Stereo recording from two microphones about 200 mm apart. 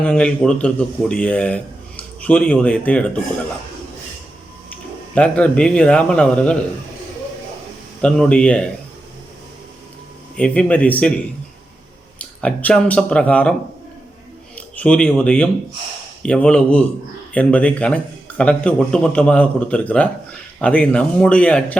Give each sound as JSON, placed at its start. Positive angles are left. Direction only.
{"t": 0.0, "sound": "a man's voice", "side_deg": 5}
{"t": 5.1, "sound": "a man's voice", "side_deg": 5}
{"t": 8.0, "sound": "a man's voice", "side_deg": 5}
{"t": 10.3, "sound": "a man's voice", "side_deg": 5}
{"t": 12.2, "sound": "a man's voice", "side_deg": 5}